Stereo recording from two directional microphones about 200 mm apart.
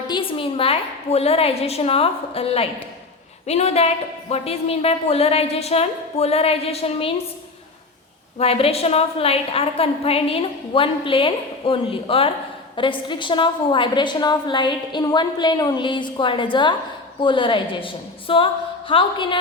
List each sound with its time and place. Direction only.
0.1 s a woman's voice: 25° left (ahead or behind)
8.4 s a woman's voice: 30° left (ahead or behind)